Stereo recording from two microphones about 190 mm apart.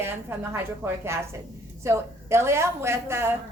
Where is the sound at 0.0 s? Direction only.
10° right (ahead or behind).